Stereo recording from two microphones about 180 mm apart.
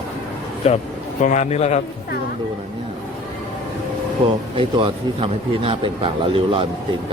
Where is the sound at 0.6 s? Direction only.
35° left (ahead or behind).